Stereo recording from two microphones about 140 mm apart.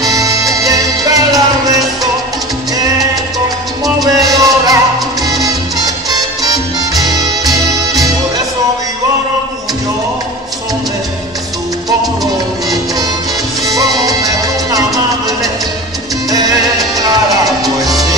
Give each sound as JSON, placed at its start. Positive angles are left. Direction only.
{"t": 0.0, "sound": "music", "side_deg": -25}
{"t": 3.8, "sound": "music", "side_deg": -25}
{"t": 5.2, "sound": "salsa music", "side_deg": -25}
{"t": 13.7, "sound": "salsa music", "side_deg": -25}
{"t": 16.3, "sound": "music", "side_deg": -25}